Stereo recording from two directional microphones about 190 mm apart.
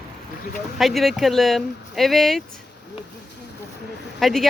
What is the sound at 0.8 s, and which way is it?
Speech, centre (ahead or behind).